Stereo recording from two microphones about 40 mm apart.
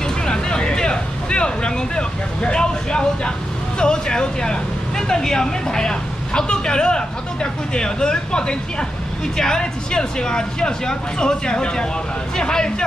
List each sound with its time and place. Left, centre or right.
0.3 s speech: left